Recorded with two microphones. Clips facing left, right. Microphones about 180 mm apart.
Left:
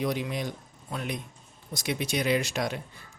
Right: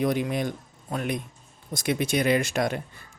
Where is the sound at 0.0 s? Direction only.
50° right (ahead or behind).